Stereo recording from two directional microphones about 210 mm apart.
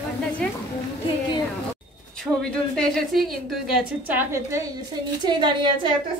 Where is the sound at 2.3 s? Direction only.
10° right (ahead or behind).